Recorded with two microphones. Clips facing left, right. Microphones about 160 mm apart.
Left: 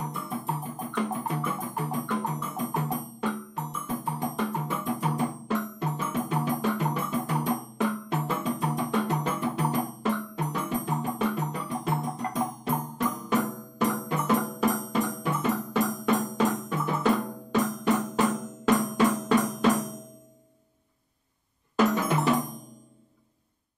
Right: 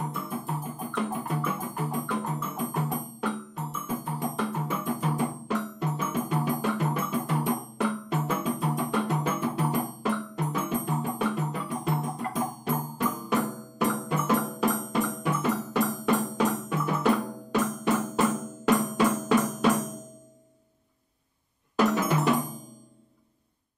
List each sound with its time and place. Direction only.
0.0 s music: centre (ahead or behind)
21.7 s music: centre (ahead or behind)